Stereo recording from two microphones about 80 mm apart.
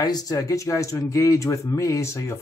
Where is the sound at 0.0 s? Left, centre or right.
Left.